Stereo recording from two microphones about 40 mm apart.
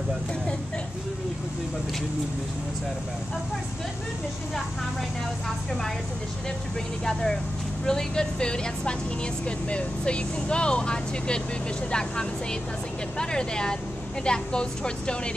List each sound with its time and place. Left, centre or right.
7.1 s speech: centre